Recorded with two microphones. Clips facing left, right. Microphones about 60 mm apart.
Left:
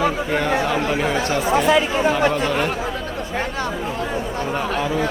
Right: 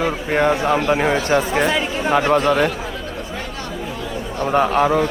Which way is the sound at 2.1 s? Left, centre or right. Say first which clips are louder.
Right 4 dB; right.